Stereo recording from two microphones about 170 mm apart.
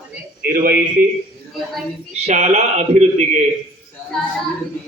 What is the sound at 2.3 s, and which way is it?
Speech, 40° right (ahead or behind).